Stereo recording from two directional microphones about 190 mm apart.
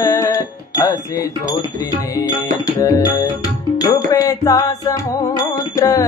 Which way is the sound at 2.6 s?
15° left (ahead or behind).